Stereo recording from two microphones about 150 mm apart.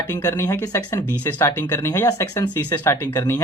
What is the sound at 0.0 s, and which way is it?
Speech, 15° left (ahead or behind).